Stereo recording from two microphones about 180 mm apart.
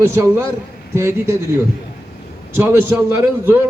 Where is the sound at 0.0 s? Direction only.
15° right (ahead or behind).